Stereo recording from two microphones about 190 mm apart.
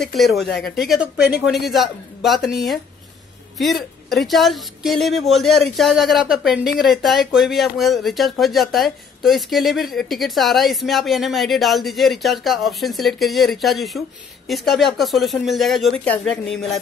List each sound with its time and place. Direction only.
0.0 s speech: centre (ahead or behind)